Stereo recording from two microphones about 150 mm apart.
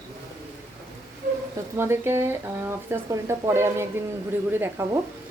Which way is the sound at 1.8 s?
15° right (ahead or behind).